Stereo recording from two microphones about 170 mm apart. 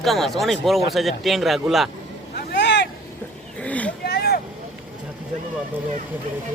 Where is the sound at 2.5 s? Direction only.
90° left.